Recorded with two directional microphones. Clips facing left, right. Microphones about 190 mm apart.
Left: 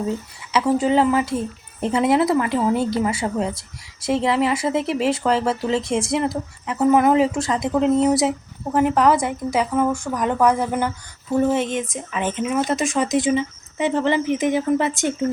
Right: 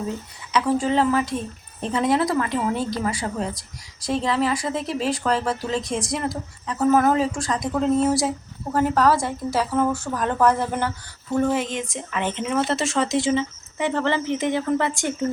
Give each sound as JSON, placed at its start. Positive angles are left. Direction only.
{"t": 0.5, "sound": "speech", "side_deg": 25}
{"t": 11.5, "sound": "speech", "side_deg": 20}